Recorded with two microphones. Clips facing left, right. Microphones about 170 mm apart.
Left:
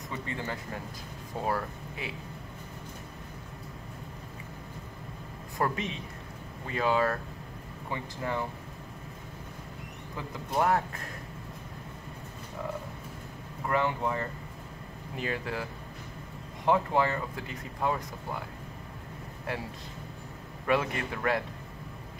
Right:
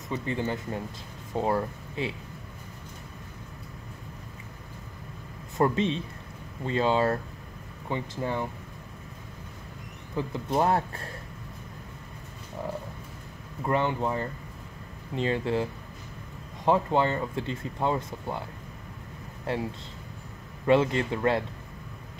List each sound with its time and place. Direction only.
0.1 s speech: 20° right (ahead or behind)
5.6 s speech: 25° right (ahead or behind)
10.1 s speech: 30° right (ahead or behind)
13.7 s speech: 25° right (ahead or behind)
20.6 s speech: 25° right (ahead or behind)